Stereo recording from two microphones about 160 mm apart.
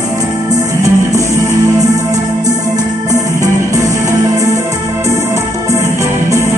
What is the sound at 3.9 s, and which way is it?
Music, 20° right (ahead or behind).